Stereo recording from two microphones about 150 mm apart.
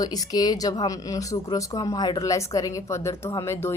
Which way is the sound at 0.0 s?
25° left (ahead or behind).